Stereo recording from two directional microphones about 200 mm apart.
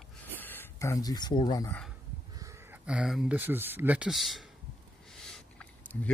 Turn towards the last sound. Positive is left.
turn(degrees=5)  # may be behind; listen again after turning